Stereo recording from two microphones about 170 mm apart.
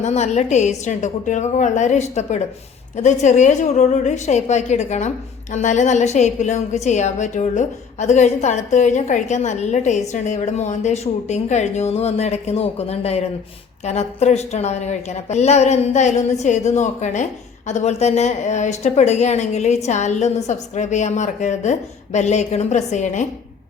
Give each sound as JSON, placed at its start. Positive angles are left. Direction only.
{"t": 0.0, "sound": "a woman's voice", "side_deg": 40}